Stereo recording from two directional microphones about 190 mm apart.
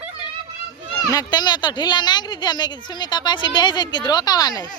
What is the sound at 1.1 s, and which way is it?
Speech, 20° left (ahead or behind).